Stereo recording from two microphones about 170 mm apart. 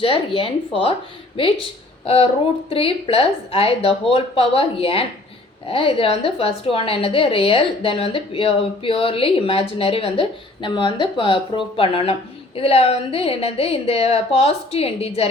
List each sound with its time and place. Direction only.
0.3 s a woman's voice: 35° left (ahead or behind)
2.6 s a woman's voice: 35° left (ahead or behind)